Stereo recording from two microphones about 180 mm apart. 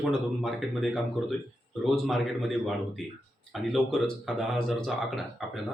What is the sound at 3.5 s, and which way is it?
A man's voice, centre (ahead or behind).